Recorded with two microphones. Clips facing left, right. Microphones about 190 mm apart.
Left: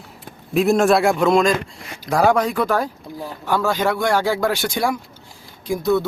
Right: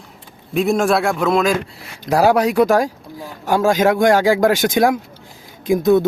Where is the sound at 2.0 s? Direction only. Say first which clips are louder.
Right 2 dB; 35° right (ahead or behind).